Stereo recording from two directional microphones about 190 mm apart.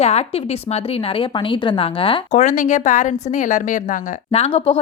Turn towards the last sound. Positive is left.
turn(degrees=30)  # may be behind; listen again after turning